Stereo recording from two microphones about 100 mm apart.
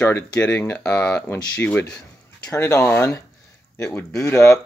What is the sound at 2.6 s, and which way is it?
Speech, 25° left (ahead or behind).